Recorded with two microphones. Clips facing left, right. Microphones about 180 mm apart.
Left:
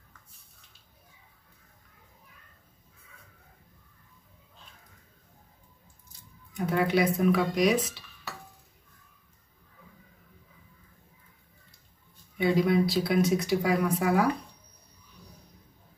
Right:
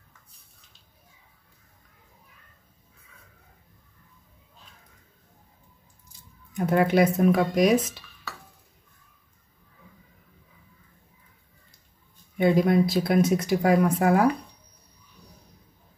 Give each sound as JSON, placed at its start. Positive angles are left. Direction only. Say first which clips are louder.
{"t": 6.5, "sound": "speech", "louder": "right 4 dB", "side_deg": -50}
{"t": 12.4, "sound": "speech", "louder": "right 4 dB", "side_deg": -55}